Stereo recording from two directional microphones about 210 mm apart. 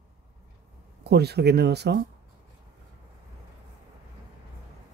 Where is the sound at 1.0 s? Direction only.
50° right (ahead or behind).